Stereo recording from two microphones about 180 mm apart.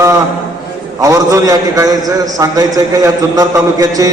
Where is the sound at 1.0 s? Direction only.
15° right (ahead or behind).